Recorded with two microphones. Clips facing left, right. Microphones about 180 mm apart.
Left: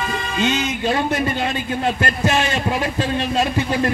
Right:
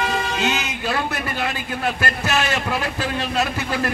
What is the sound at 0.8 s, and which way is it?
A man's voice, 20° left (ahead or behind).